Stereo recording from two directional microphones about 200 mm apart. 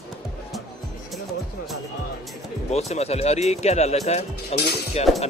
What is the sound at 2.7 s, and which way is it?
Speech, 30° left (ahead or behind).